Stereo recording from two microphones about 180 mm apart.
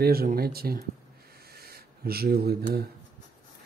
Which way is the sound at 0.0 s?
55° right (ahead or behind).